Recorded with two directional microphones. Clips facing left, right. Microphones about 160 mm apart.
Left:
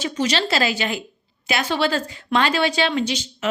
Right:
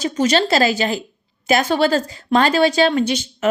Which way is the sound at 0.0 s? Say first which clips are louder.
Right 5 dB; 45° right (ahead or behind).